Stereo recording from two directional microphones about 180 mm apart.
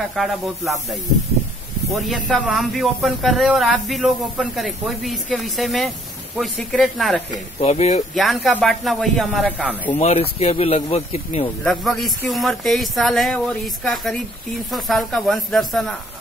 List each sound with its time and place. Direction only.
0.1 s speech: centre (ahead or behind)
2.0 s speech: centre (ahead or behind)
7.6 s speech: 35° left (ahead or behind)
8.1 s speech: centre (ahead or behind)
9.9 s speech: 35° left (ahead or behind)
11.6 s speech: centre (ahead or behind)